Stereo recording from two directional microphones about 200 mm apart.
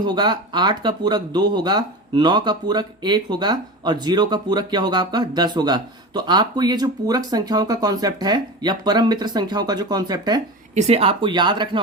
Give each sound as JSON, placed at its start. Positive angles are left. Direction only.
{"t": 0.0, "sound": "speech", "side_deg": -20}
{"t": 10.8, "sound": "speech", "side_deg": -30}